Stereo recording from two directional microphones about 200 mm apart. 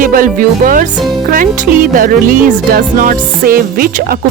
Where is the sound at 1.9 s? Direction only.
40° right (ahead or behind).